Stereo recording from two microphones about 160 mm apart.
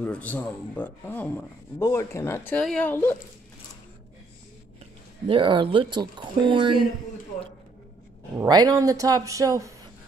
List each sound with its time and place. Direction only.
0.0 s speech: 10° left (ahead or behind)
5.3 s speech: 30° right (ahead or behind)
8.4 s speech: 25° right (ahead or behind)